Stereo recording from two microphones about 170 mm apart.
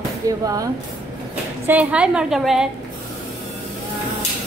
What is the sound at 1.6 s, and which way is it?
A woman's voice, 10° right (ahead or behind).